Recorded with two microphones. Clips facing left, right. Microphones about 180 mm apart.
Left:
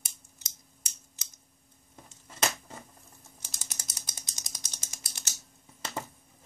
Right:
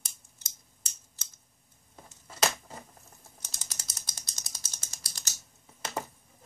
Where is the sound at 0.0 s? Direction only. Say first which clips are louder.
Left 1 dB; 15° left (ahead or behind).